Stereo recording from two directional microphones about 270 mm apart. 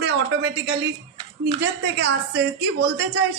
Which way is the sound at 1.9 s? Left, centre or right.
Right.